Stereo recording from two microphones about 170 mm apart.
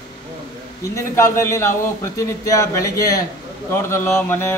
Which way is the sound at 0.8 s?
15° left (ahead or behind).